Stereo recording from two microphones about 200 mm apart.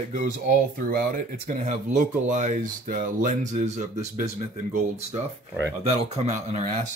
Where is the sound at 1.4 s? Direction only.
40° right (ahead or behind).